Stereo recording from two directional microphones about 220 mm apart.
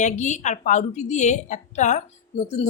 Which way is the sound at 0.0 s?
30° left (ahead or behind).